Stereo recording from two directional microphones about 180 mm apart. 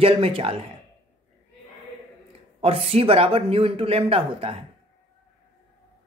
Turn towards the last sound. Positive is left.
turn(degrees=-30)  # may be behind; listen again after turning